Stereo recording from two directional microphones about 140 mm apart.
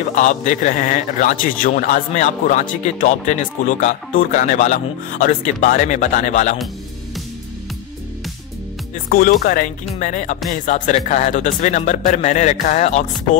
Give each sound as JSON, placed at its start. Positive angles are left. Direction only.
{"t": 0.1, "sound": "a man's voice", "side_deg": 60}
{"t": 9.1, "sound": "a man's voice", "side_deg": 90}